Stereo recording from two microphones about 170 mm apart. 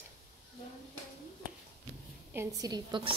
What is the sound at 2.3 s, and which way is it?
Speech, 15° right (ahead or behind).